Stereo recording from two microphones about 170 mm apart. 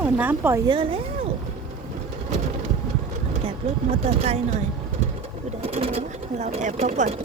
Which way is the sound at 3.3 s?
40° right (ahead or behind).